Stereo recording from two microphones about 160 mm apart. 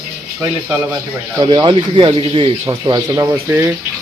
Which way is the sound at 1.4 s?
30° right (ahead or behind).